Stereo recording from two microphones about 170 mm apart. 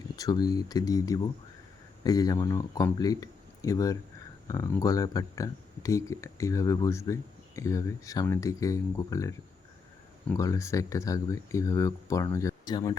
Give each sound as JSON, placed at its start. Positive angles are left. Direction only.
{"t": 0.2, "sound": "speech", "side_deg": 20}